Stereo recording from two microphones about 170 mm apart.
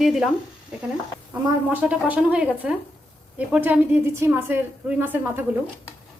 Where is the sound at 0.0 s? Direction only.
Centre (ahead or behind).